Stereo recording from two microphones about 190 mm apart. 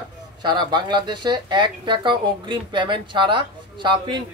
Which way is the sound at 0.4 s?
25° right (ahead or behind).